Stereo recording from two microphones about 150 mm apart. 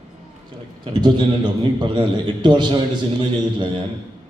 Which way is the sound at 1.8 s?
30° right (ahead or behind).